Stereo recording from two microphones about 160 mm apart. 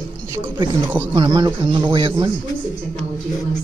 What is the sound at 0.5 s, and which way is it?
Speech, 30° right (ahead or behind).